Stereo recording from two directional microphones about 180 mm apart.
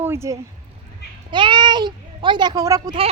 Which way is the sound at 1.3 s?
25° right (ahead or behind).